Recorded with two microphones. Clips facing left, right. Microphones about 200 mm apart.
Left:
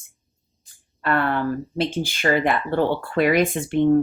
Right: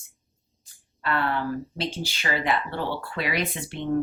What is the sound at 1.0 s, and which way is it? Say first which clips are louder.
Speech: left 5 dB; 55° left (ahead or behind).